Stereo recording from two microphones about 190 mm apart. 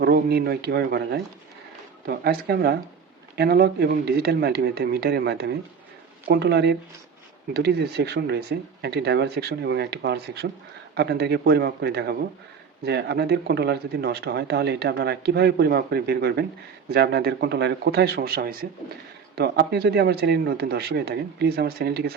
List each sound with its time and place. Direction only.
0.0 s speech: 55° right (ahead or behind)